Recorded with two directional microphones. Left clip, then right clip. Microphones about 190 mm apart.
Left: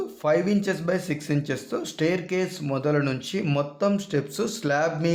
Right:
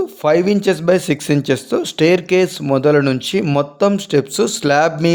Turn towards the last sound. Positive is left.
turn(degrees=-45)  # may be behind; listen again after turning